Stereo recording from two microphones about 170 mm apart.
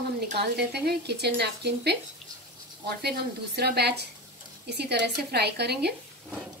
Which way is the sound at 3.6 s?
75° right (ahead or behind).